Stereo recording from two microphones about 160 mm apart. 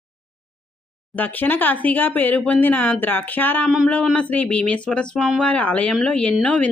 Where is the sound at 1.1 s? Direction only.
10° left (ahead or behind).